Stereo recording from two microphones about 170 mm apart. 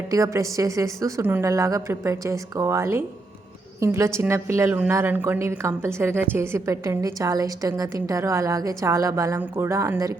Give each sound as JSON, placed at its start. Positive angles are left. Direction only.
{"t": 0.1, "sound": "a woman's voice", "side_deg": -20}